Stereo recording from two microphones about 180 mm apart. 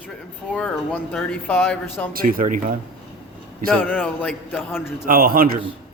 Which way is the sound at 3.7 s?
10° left (ahead or behind).